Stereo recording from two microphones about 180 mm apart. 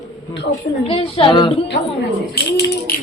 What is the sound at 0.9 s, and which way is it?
Speech, 30° left (ahead or behind).